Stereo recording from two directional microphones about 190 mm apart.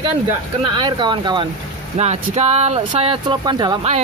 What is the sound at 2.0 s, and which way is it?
Speech, 35° right (ahead or behind).